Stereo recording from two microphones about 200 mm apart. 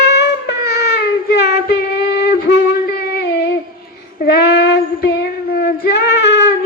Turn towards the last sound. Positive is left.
turn(degrees=60)  # may be behind; listen again after turning